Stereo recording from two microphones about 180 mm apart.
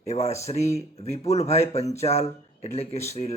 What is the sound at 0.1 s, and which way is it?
Speech, 35° left (ahead or behind).